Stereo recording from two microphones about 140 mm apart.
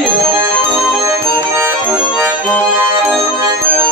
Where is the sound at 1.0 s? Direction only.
15° right (ahead or behind).